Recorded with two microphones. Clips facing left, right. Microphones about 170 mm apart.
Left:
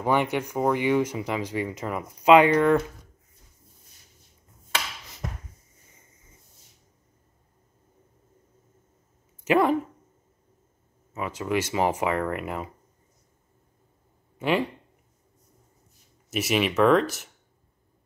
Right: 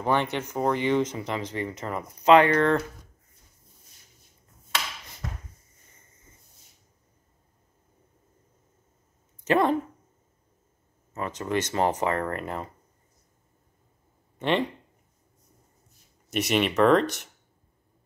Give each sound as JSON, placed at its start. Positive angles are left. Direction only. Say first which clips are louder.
{"t": 0.0, "sound": "speech", "louder": "left 2 dB", "side_deg": 10}
{"t": 9.4, "sound": "speech", "louder": "left 1 dB", "side_deg": 5}
{"t": 11.1, "sound": "speech", "louder": "left 1 dB", "side_deg": 5}
{"t": 14.4, "sound": "speech", "louder": "left 1 dB", "side_deg": 5}
{"t": 16.3, "sound": "speech", "louder": "even", "side_deg": 5}